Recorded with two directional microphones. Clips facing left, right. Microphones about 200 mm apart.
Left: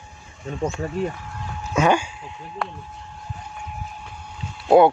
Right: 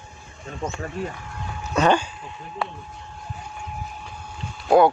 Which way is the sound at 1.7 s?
10° left (ahead or behind).